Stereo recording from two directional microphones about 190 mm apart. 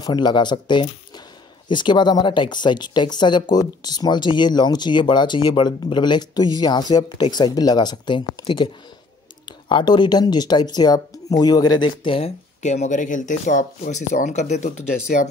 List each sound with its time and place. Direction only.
0.0 s speech: 20° left (ahead or behind); by 15.2 s 40° left (ahead or behind)